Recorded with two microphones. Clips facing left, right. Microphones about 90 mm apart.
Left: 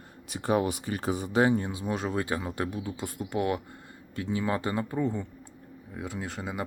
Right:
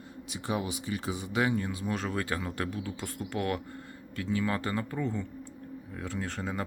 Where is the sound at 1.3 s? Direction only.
30° left (ahead or behind).